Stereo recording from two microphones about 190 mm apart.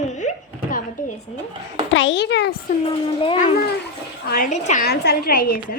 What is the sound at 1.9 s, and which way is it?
Speech, 75° left (ahead or behind).